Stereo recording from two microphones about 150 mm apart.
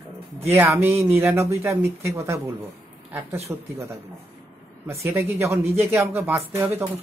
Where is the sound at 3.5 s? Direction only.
20° right (ahead or behind).